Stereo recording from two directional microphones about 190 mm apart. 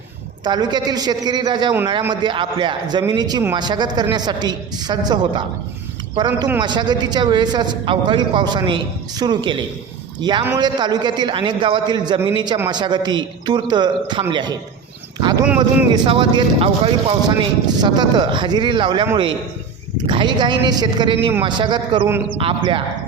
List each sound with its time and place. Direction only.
0.4 s speech: 25° right (ahead or behind)
20.1 s speech: 25° right (ahead or behind)